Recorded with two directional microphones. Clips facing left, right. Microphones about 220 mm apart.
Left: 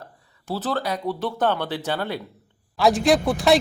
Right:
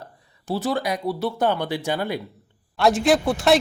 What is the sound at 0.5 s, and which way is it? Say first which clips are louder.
Speech: right 2 dB; 15° right (ahead or behind).